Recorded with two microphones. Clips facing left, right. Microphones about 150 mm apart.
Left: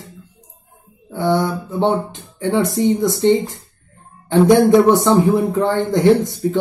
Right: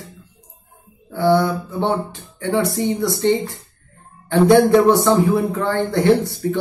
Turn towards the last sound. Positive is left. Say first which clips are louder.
# left 2 dB
turn(degrees=15)  # may be behind; listen again after turning